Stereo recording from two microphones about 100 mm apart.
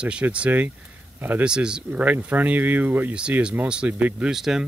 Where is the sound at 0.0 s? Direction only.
10° right (ahead or behind).